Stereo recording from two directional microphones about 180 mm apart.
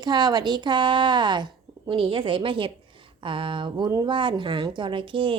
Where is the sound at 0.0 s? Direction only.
25° right (ahead or behind).